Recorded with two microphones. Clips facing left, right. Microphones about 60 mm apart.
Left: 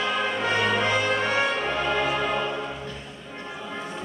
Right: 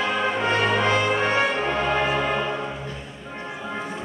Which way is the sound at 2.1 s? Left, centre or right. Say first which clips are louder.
Right 2 dB; centre.